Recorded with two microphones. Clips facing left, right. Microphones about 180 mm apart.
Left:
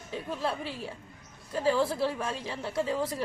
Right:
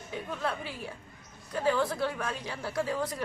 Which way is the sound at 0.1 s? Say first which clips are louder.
Left 2 dB; 30° left (ahead or behind).